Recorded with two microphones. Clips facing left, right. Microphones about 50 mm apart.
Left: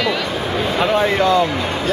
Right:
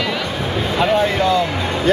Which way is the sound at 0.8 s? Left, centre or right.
Centre.